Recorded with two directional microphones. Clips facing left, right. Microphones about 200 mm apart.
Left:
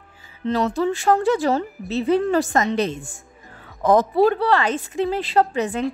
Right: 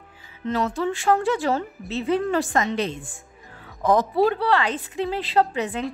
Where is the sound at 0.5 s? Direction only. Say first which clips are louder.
Left 3 dB; 35° left (ahead or behind).